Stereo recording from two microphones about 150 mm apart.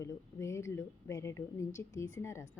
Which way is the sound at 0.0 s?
20° left (ahead or behind).